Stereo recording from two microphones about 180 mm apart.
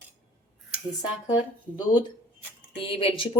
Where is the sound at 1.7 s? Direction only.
25° left (ahead or behind).